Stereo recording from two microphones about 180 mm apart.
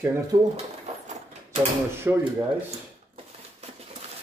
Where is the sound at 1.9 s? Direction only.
15° right (ahead or behind).